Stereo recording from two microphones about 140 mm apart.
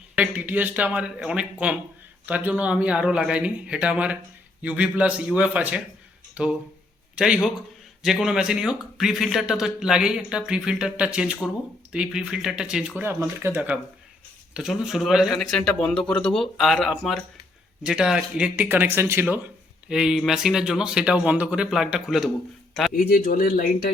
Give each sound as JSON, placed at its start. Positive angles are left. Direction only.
{"t": 0.2, "sound": "speech", "side_deg": -10}
{"t": 13.0, "sound": "speech", "side_deg": -20}
{"t": 19.9, "sound": "speech", "side_deg": -5}
{"t": 22.9, "sound": "speech", "side_deg": 85}